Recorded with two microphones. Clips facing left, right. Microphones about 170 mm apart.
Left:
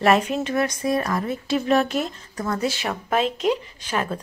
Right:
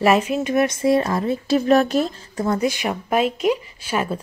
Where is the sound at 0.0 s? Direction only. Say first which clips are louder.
Right 2 dB; 5° right (ahead or behind); by 2.4 s 35° right (ahead or behind).